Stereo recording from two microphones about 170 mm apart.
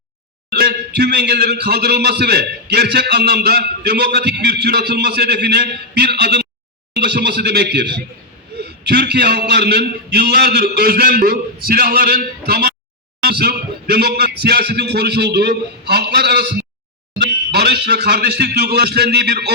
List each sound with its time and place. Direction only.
0.5 s a man's voice: 65° right (ahead or behind)